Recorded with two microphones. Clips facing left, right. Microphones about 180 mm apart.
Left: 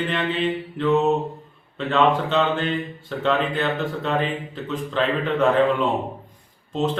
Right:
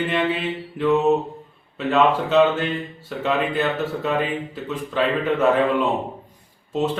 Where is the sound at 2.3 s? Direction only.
5° right (ahead or behind).